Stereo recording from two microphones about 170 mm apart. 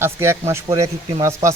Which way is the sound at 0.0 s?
15° right (ahead or behind).